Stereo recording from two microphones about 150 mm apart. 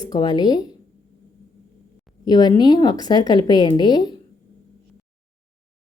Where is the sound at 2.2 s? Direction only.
25° left (ahead or behind).